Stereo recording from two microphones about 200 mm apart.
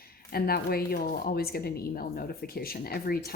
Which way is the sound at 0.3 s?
50° left (ahead or behind).